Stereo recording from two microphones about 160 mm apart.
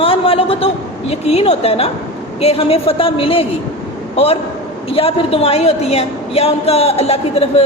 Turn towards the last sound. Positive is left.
turn(degrees=40)  # may be behind; listen again after turning